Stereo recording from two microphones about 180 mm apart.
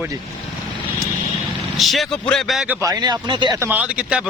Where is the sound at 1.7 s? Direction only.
Centre (ahead or behind).